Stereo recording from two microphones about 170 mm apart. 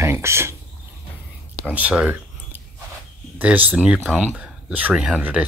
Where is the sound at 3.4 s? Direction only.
10° right (ahead or behind).